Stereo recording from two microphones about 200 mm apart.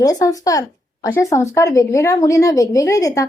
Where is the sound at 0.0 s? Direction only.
20° left (ahead or behind).